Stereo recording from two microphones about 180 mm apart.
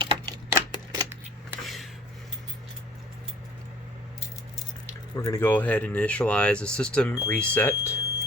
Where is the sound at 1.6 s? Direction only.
Centre (ahead or behind).